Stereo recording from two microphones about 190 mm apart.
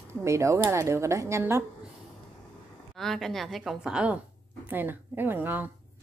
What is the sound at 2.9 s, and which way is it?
A woman's voice, centre (ahead or behind).